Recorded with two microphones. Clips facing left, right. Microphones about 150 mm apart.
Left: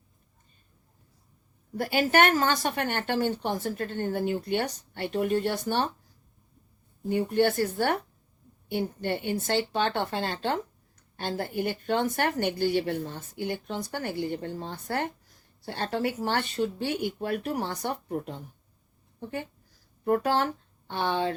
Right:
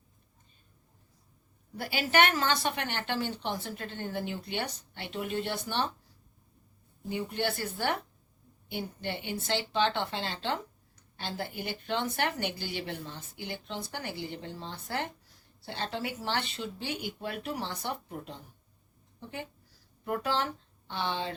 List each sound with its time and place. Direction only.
1.7 s a woman's voice: 45° left (ahead or behind)
7.1 s a woman's voice: 50° left (ahead or behind)
20.1 s speech: 45° left (ahead or behind)